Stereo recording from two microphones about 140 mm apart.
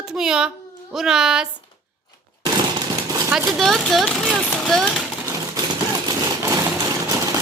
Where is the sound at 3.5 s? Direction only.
Centre (ahead or behind).